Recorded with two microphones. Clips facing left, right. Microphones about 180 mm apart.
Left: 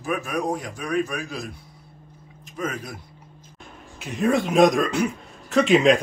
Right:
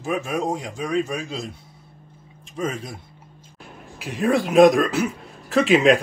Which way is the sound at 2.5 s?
30° right (ahead or behind).